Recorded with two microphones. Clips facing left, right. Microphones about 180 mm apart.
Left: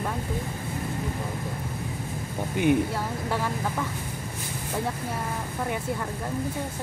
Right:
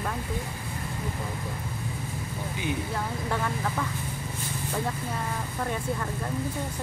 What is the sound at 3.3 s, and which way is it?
Speech, centre (ahead or behind).